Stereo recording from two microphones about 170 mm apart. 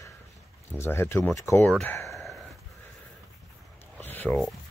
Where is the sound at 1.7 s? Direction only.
5° left (ahead or behind).